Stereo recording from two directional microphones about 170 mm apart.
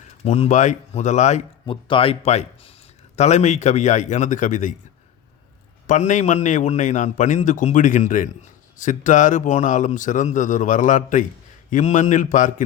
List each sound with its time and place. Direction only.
0.3 s a man's voice: 40° left (ahead or behind)
1.6 s a man's voice: 30° left (ahead or behind); by 4.7 s 50° left (ahead or behind)
5.9 s a man's voice: 45° left (ahead or behind)